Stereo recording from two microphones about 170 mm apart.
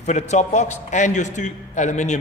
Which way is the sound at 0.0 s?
40° left (ahead or behind).